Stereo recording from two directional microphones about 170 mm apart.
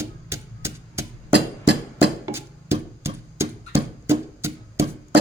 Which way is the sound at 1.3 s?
85° right.